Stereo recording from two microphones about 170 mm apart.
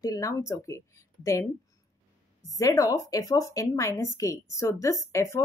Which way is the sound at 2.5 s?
20° left (ahead or behind).